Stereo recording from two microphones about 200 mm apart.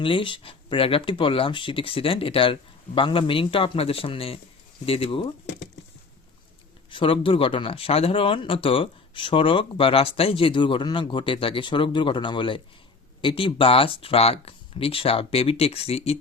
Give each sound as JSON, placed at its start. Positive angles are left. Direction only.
{"t": 0.0, "sound": "speech", "side_deg": 25}
{"t": 6.9, "sound": "speech", "side_deg": 25}